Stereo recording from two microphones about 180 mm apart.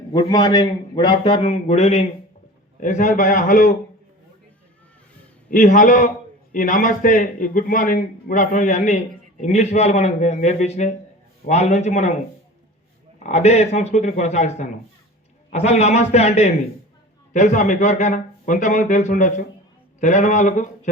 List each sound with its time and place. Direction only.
0.1 s a man's voice: 25° left (ahead or behind); by 3.8 s 50° left (ahead or behind)
5.5 s a man's voice: 45° left (ahead or behind)
13.2 s a man's voice: 35° left (ahead or behind)